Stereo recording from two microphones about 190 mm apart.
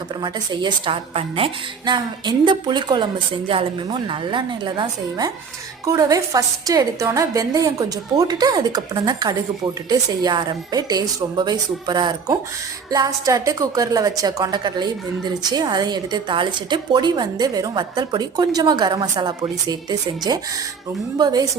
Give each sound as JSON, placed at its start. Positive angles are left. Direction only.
{"t": 0.2, "sound": "a woman's voice", "side_deg": -20}